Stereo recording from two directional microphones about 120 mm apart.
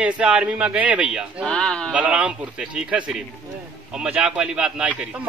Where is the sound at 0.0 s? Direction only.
10° right (ahead or behind).